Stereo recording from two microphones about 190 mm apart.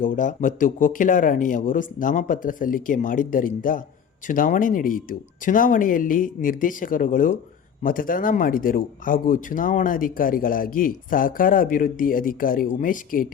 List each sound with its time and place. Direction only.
0.0 s speech: 45° left (ahead or behind)